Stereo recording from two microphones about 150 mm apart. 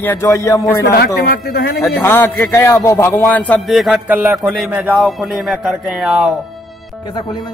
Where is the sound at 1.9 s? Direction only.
15° left (ahead or behind); by 6.3 s centre (ahead or behind).